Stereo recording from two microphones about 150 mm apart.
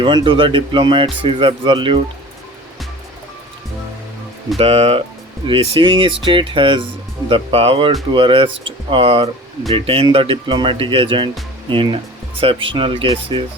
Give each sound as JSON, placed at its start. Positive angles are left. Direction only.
{"t": 0.0, "sound": "speech", "side_deg": -35}
{"t": 4.5, "sound": "speech", "side_deg": -40}